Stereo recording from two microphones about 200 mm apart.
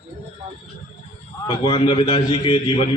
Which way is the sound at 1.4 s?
25° left (ahead or behind).